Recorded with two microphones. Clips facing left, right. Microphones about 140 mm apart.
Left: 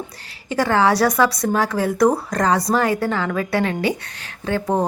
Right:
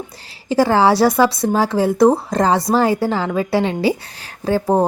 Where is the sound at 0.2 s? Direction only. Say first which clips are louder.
Right 6 dB; 30° right (ahead or behind).